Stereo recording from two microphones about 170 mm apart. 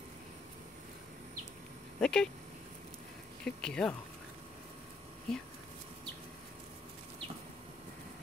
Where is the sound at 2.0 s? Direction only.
5° left (ahead or behind).